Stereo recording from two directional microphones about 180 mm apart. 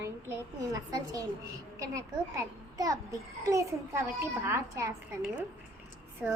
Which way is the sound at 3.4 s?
15° right (ahead or behind).